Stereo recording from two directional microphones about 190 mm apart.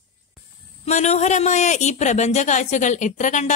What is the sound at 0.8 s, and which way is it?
A woman's voice, 35° left (ahead or behind).